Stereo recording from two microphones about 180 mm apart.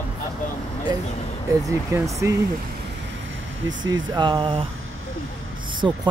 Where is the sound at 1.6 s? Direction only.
15° right (ahead or behind).